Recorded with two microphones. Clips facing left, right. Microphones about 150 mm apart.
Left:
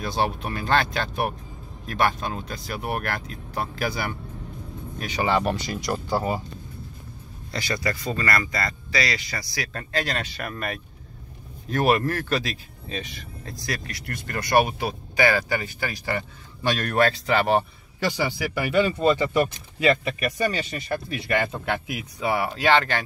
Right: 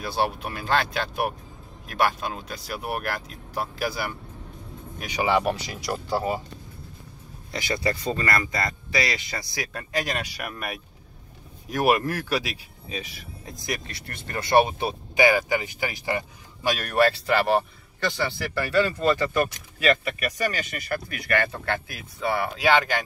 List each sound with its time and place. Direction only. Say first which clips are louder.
0.0 s speech: left 1 dB; 5° right (ahead or behind)
7.5 s speech: right 1 dB; 20° right (ahead or behind)
9.7 s speech: left 1 dB; 15° right (ahead or behind)
13.5 s speech: even; 20° right (ahead or behind); by 17.6 s centre (ahead or behind)
18.0 s speech: left 2 dB; 10° left (ahead or behind)
22.6 s speech: even; 10° right (ahead or behind)